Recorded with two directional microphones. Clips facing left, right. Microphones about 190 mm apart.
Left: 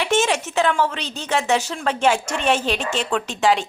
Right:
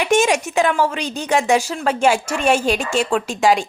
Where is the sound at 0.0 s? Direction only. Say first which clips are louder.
Right 4 dB; 15° right (ahead or behind).